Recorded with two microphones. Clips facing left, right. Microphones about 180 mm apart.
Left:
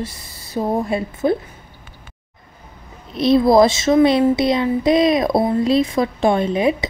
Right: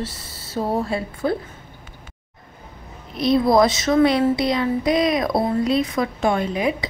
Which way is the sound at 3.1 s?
25° left (ahead or behind).